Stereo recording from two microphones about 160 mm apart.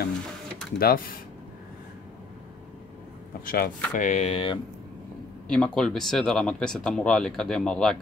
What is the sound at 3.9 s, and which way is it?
Speech, 50° left (ahead or behind).